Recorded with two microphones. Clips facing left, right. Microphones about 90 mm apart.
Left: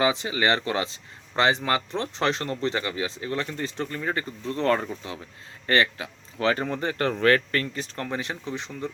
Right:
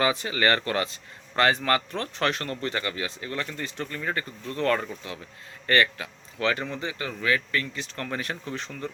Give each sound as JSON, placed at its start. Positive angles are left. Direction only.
{"t": 0.0, "sound": "speech", "side_deg": 20}
{"t": 8.0, "sound": "speech", "side_deg": 20}